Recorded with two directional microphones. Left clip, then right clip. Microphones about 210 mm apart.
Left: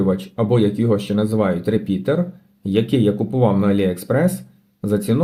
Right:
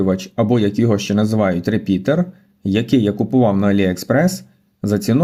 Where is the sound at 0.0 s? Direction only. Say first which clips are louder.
Right 2 dB; 40° right (ahead or behind).